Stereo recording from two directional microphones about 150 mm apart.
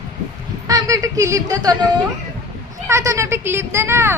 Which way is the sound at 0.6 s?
25° right (ahead or behind).